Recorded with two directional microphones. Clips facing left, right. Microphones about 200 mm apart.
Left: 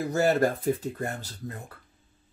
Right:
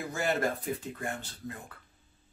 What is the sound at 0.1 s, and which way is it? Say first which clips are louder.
Speech: left 7 dB; 40° left (ahead or behind).